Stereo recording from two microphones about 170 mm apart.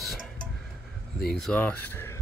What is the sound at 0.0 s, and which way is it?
Vehicle, centre (ahead or behind).